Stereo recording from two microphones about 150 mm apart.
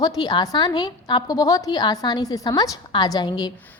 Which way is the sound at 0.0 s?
25° left (ahead or behind).